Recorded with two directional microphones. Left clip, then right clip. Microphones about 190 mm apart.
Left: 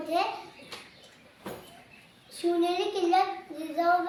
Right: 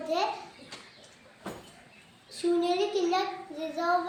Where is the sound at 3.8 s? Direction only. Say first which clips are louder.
Left 4 dB; 20° left (ahead or behind).